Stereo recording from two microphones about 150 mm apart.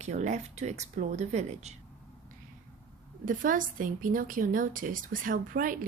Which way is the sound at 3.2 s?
65° right (ahead or behind).